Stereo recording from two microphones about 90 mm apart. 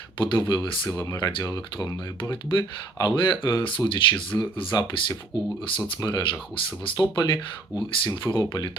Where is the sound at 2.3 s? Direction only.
60° left (ahead or behind).